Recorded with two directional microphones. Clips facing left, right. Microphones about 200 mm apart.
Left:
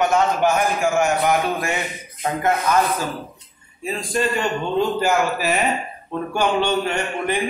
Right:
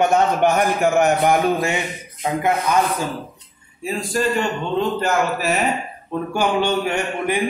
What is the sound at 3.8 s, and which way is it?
A man's voice, 5° right (ahead or behind).